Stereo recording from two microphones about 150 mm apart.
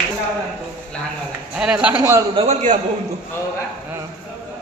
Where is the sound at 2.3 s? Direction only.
50° right (ahead or behind).